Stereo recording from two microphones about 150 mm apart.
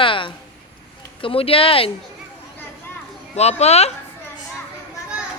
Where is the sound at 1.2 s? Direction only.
40° left (ahead or behind).